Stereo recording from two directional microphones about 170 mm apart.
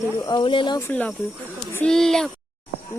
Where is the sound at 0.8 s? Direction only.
10° left (ahead or behind).